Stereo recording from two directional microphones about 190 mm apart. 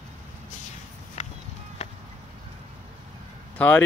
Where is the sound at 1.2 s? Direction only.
35° left (ahead or behind).